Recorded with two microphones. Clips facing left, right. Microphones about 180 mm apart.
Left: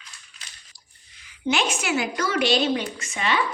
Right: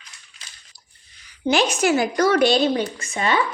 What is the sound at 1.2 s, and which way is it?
A woman's voice, 35° right (ahead or behind).